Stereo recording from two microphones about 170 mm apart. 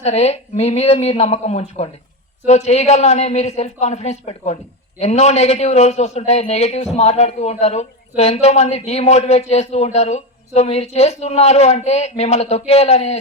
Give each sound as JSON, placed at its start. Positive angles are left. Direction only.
{"t": 0.0, "sound": "a man's voice", "side_deg": 40}